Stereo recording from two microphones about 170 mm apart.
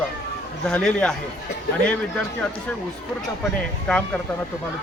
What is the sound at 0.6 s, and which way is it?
Speech, 5° left (ahead or behind).